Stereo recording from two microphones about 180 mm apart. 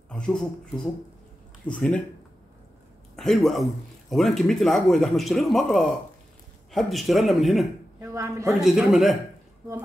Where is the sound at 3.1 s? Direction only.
Centre (ahead or behind).